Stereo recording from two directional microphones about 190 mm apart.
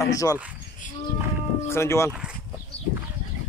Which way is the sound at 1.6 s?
15° left (ahead or behind).